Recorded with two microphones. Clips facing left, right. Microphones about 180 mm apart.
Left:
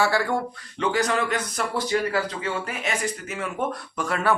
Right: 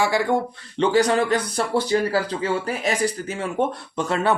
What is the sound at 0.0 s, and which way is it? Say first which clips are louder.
Speech: right 2 dB; 20° right (ahead or behind).